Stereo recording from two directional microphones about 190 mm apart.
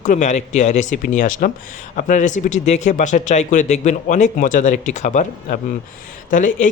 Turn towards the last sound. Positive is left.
turn(degrees=40)  # may be behind; listen again after turning